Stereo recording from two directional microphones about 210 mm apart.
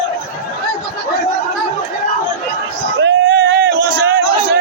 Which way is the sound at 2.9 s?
60° right (ahead or behind).